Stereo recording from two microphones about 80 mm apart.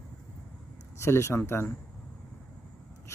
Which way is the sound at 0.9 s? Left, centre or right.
Left.